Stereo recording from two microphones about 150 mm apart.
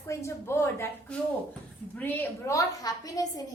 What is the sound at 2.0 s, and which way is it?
A woman's voice, 15° left (ahead or behind).